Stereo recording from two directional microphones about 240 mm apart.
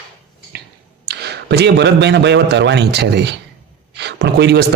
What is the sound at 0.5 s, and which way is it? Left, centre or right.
Finger snapping, right.